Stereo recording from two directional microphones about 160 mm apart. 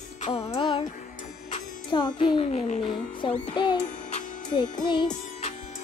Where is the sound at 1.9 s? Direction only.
30° left (ahead or behind).